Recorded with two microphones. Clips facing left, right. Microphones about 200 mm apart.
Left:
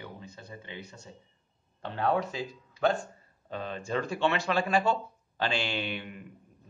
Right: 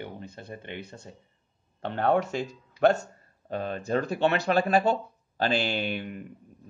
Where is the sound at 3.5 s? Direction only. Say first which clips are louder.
Right 5 dB; 50° right (ahead or behind).